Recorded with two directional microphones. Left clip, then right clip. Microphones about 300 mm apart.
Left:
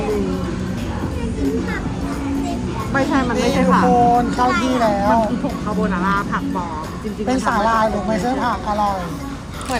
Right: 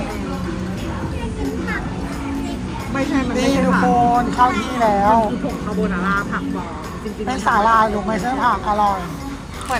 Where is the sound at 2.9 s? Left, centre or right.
Centre.